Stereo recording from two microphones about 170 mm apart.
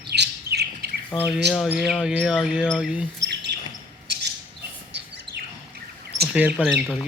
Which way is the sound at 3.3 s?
90° right.